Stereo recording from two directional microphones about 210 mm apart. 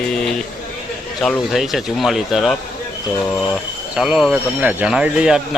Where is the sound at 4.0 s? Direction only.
5° right (ahead or behind).